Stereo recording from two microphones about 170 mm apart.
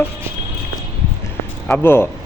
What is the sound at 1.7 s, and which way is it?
Speech, 10° left (ahead or behind).